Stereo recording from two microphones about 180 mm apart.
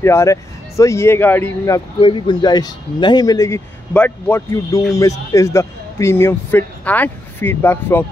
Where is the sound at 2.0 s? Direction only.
25° left (ahead or behind); by 8.0 s 10° left (ahead or behind).